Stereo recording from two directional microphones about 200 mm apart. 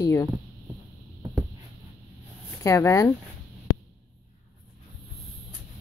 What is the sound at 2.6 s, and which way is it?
Speech, 15° left (ahead or behind).